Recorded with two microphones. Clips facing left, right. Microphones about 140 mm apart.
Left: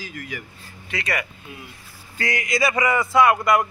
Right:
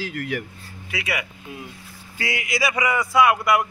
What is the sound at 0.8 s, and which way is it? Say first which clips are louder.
Speech: left 1 dB; 10° right (ahead or behind).